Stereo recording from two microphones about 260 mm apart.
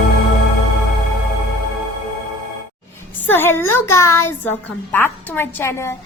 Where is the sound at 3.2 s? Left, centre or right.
Centre.